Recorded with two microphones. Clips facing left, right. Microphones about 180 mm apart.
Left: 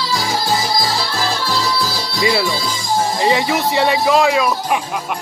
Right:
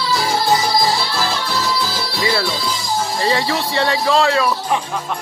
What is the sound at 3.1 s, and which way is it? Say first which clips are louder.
Speech: left 1 dB; 15° left (ahead or behind).